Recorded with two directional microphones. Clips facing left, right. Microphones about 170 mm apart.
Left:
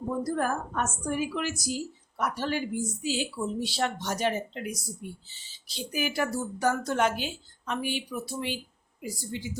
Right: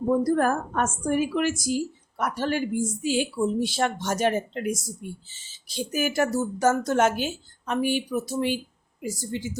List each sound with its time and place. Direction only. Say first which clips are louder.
0.3 s a woman's voice: right 6 dB; 55° right (ahead or behind)